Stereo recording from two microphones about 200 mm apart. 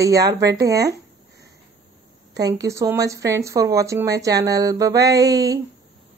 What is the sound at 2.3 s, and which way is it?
Speech, 20° right (ahead or behind).